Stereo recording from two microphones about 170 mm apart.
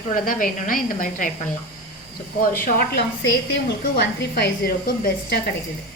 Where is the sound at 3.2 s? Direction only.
85° left; by 5.4 s 70° left (ahead or behind).